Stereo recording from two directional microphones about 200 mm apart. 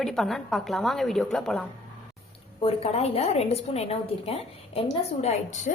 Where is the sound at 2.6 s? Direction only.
30° left (ahead or behind).